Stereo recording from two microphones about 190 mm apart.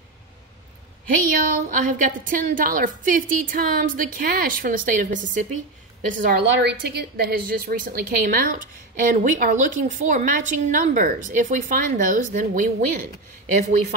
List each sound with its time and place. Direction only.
1.4 s a woman's voice: 45° right (ahead or behind)
6.1 s a woman's voice: 70° right (ahead or behind); by 13.7 s 40° right (ahead or behind)